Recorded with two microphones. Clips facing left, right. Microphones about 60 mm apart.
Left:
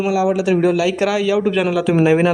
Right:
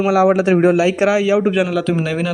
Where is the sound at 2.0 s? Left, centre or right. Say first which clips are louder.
Left 7 dB; left.